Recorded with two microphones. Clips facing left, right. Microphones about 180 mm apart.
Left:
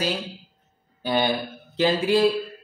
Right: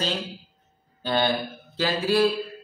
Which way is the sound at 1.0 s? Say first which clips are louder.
Left 1 dB; 15° left (ahead or behind).